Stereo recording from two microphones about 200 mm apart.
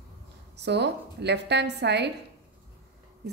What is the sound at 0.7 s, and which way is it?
A woman's voice, 60° right (ahead or behind).